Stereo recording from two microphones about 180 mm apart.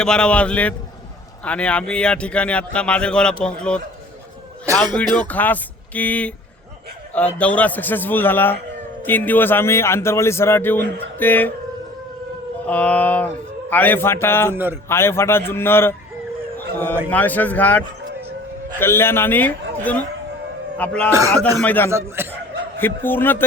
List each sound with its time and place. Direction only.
0.0 s a man's voice: 5° left (ahead or behind)
5.3 s a man's voice: 10° left (ahead or behind)
12.6 s a man's voice: 10° left (ahead or behind)
14.5 s a man's voice: 10° right (ahead or behind)
14.8 s a man's voice: 15° left (ahead or behind)
17.1 s a man's voice: 10° left (ahead or behind)
21.1 s a man's voice: 15° right (ahead or behind)
21.6 s a man's voice: 10° left (ahead or behind)
21.8 s a man's voice: 15° right (ahead or behind)
22.8 s a man's voice: 10° left (ahead or behind)